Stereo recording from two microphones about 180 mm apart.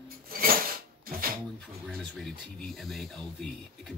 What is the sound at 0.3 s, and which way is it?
Dishes, 55° right (ahead or behind).